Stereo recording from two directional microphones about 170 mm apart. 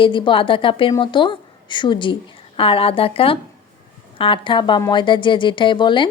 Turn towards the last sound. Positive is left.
turn(degrees=25)  # may be behind; listen again after turning